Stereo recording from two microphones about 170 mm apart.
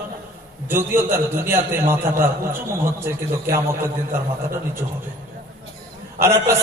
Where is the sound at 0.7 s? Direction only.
15° right (ahead or behind).